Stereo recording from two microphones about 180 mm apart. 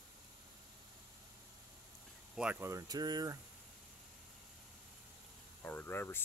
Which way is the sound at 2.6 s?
20° right (ahead or behind).